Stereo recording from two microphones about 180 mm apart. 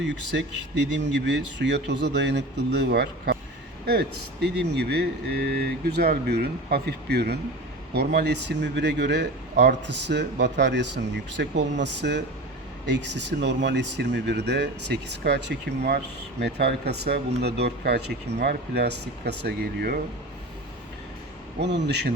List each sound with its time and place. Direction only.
0.0 s speech: 75° right (ahead or behind)
4.4 s speech: 70° right (ahead or behind)
21.6 s speech: 75° right (ahead or behind)